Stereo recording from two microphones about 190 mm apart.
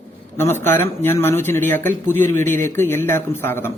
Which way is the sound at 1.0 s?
10° left (ahead or behind).